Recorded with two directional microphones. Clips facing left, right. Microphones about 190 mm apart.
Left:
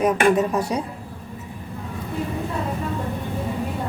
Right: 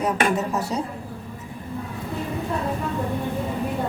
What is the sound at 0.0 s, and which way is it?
Speech, 15° left (ahead or behind).